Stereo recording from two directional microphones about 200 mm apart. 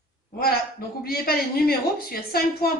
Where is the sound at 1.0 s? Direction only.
50° left (ahead or behind).